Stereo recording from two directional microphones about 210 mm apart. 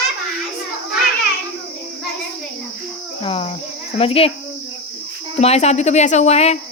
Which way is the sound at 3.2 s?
25° left (ahead or behind).